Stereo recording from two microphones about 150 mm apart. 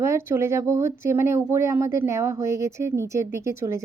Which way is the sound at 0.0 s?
15° right (ahead or behind).